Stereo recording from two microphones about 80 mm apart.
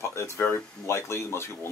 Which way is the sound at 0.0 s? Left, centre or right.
Left.